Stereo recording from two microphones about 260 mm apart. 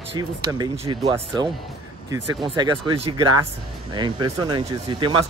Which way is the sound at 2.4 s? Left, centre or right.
Centre.